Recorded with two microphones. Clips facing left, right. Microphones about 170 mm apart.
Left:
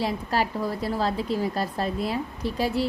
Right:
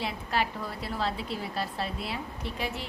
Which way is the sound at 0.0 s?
40° left (ahead or behind).